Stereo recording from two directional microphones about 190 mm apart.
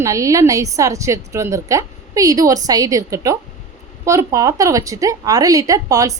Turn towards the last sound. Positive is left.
turn(degrees=-20)  # may be behind; listen again after turning